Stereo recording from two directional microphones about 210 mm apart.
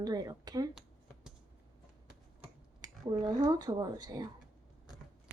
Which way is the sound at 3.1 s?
20° right (ahead or behind).